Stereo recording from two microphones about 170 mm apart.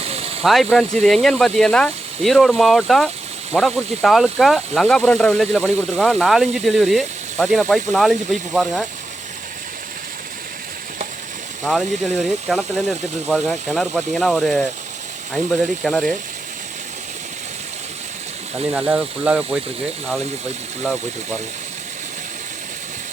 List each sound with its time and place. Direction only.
0.0 s hiss: 35° right (ahead or behind)
0.4 s speech: centre (ahead or behind)
11.6 s speech: 5° left (ahead or behind)
15.8 s speech: centre (ahead or behind)
18.7 s speech: 10° right (ahead or behind)